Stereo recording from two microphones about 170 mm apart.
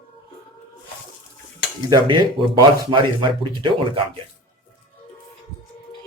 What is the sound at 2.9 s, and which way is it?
Speech, 30° right (ahead or behind).